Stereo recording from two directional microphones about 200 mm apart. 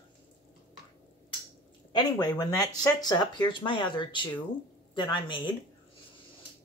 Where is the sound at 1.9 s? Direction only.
20° left (ahead or behind).